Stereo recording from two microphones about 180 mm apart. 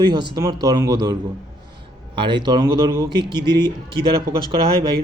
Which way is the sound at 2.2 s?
25° right (ahead or behind).